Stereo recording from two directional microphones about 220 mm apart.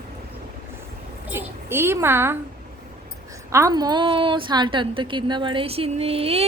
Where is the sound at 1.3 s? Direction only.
10° right (ahead or behind).